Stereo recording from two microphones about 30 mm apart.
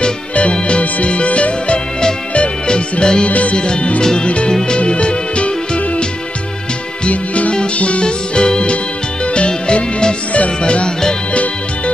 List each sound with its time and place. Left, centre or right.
0.3 s music: left
2.7 s music: left
3.3 s music: left
3.5 s music: left
4.7 s music: left
7.1 s music: left
8.0 s music: left